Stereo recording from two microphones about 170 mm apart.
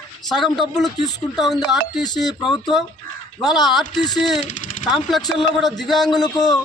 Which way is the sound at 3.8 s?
25° left (ahead or behind).